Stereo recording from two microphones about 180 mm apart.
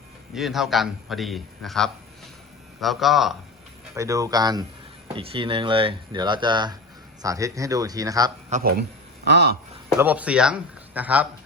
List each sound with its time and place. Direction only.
0.3 s a man's voice: centre (ahead or behind)
3.9 s speech: 15° right (ahead or behind)
8.5 s a man's voice: 40° right (ahead or behind)
9.2 s speech: 65° right (ahead or behind)
10.0 s speech: 10° right (ahead or behind)